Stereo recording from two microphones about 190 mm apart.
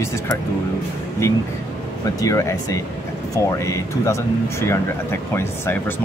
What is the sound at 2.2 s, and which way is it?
Speech, 15° left (ahead or behind).